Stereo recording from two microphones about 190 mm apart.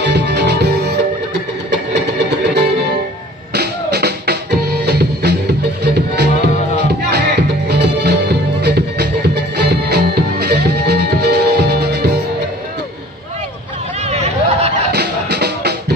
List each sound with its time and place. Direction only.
0.0 s music: 65° right (ahead or behind)
3.5 s music: 60° right (ahead or behind)
14.0 s chatter: 35° right (ahead or behind)
14.9 s music: 60° right (ahead or behind)